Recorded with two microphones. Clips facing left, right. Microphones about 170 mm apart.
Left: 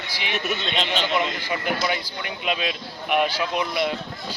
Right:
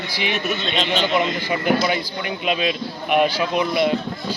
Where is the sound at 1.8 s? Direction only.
5° right (ahead or behind).